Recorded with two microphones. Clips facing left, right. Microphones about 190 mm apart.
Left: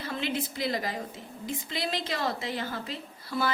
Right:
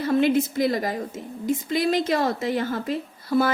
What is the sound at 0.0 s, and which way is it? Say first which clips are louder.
A woman's voice: right 12 dB; 50° right (ahead or behind).